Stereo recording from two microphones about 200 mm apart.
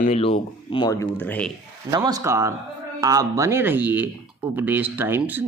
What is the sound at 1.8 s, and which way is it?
Speech, 20° right (ahead or behind).